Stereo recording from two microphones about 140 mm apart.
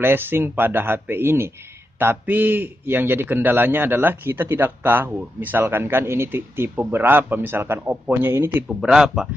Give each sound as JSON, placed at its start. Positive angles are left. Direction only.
{"t": 0.0, "sound": "a man's voice", "side_deg": -15}
{"t": 8.6, "sound": "speech", "side_deg": -5}